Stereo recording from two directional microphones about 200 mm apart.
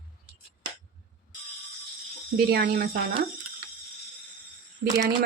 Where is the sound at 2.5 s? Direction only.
50° right (ahead or behind).